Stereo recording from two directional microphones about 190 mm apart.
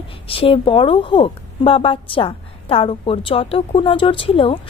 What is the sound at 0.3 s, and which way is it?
A woman's voice, 30° left (ahead or behind).